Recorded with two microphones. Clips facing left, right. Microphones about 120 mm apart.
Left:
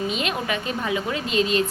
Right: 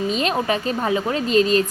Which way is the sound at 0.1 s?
35° right (ahead or behind).